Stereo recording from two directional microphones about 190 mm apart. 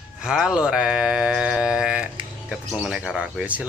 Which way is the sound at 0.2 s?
5° right (ahead or behind).